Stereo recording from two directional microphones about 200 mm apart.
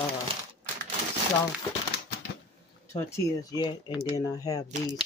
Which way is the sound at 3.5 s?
20° left (ahead or behind).